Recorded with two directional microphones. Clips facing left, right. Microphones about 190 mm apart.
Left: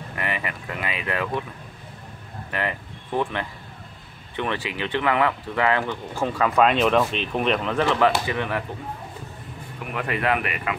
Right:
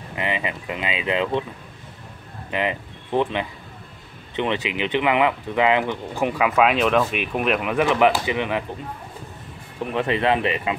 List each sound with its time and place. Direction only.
0.1 s speech: 20° right (ahead or behind)
2.5 s speech: 20° right (ahead or behind)
9.9 s speech: 25° right (ahead or behind)